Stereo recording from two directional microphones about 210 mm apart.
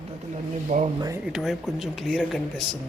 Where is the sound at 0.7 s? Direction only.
35° right (ahead or behind).